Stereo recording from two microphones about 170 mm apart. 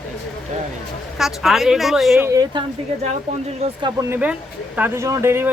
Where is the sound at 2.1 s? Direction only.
15° right (ahead or behind).